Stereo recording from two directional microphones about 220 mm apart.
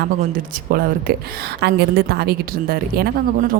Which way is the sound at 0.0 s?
40° right (ahead or behind).